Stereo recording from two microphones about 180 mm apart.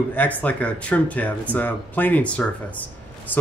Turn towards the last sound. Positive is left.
turn(degrees=10)  # may be behind; listen again after turning